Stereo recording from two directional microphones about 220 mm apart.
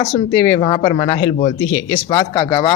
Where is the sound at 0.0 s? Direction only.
20° left (ahead or behind).